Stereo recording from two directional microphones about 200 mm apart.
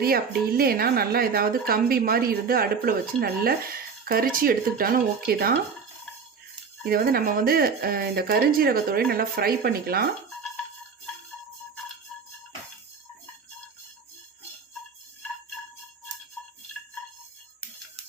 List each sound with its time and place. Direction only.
0.0 s a woman's voice: 50° right (ahead or behind)
6.8 s a woman's voice: 50° right (ahead or behind)